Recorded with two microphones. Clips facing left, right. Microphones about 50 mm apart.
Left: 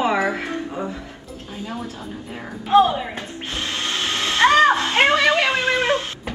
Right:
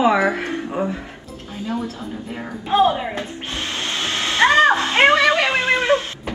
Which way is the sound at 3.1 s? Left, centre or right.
Right.